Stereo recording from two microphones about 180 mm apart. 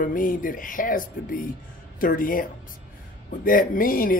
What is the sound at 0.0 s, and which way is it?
Speech, 50° left (ahead or behind).